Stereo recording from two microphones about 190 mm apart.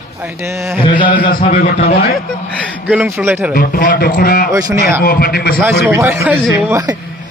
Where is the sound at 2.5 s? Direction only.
5° left (ahead or behind).